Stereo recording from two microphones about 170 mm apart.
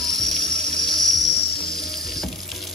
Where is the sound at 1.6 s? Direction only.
Centre (ahead or behind).